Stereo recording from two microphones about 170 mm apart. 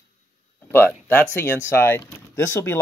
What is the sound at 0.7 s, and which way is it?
Speech, 10° left (ahead or behind).